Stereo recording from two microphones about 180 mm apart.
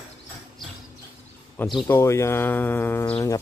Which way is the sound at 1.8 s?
15° left (ahead or behind).